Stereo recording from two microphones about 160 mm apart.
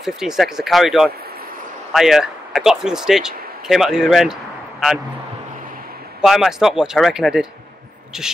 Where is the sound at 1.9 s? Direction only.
Centre (ahead or behind).